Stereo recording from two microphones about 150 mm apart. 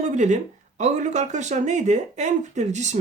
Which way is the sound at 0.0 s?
55° right (ahead or behind).